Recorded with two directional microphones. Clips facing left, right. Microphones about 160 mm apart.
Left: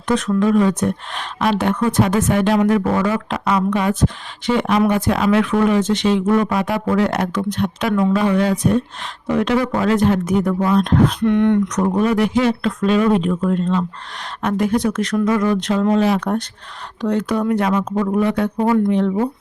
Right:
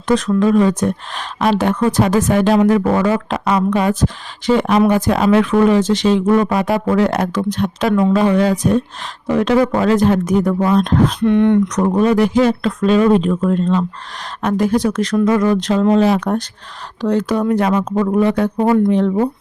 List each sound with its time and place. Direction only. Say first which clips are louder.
0.1 s speech: right 2 dB; 35° right (ahead or behind)
11.3 s speech: right 5 dB; 20° right (ahead or behind)
11.7 s speech: right 3 dB; 35° right (ahead or behind)